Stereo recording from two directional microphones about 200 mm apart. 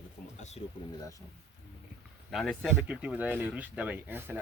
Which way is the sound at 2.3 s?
Centre (ahead or behind).